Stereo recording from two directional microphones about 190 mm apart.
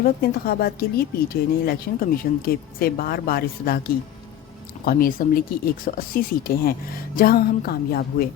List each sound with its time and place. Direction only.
0.0 s speech: 55° left (ahead or behind)